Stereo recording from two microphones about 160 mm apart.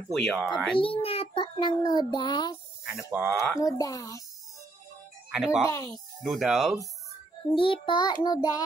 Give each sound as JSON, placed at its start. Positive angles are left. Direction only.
{"t": 0.1, "sound": "speech", "side_deg": 0}
{"t": 0.7, "sound": "a child's voice", "side_deg": 35}
{"t": 1.8, "sound": "child singing", "side_deg": 25}
{"t": 2.8, "sound": "speech", "side_deg": -5}
{"t": 3.5, "sound": "child singing", "side_deg": 20}
{"t": 5.3, "sound": "speech", "side_deg": -5}
{"t": 5.7, "sound": "child singing", "side_deg": 20}
{"t": 6.2, "sound": "speech", "side_deg": -5}
{"t": 7.5, "sound": "child singing", "side_deg": 35}